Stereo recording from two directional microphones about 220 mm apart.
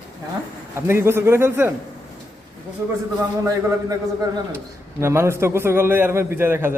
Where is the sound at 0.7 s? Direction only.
10° right (ahead or behind).